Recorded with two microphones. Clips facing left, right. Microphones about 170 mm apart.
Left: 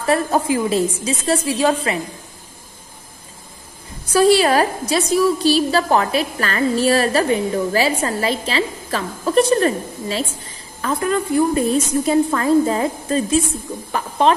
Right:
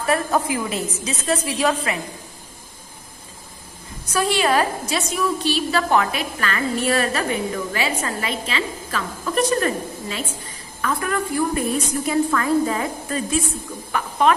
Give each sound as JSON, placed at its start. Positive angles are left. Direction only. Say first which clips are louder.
{"t": 0.0, "sound": "a woman's voice", "louder": "left 3 dB", "side_deg": 30}
{"t": 4.1, "sound": "a woman's voice", "louder": "left 6 dB", "side_deg": 35}